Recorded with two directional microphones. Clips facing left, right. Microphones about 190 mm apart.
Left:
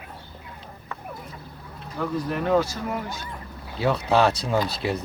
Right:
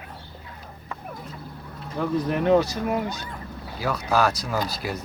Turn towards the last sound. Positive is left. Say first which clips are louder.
# left 3 dB
turn(degrees=25)  # may be behind; listen again after turning